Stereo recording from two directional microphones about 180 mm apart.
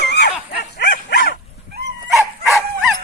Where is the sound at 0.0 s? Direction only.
65° left (ahead or behind).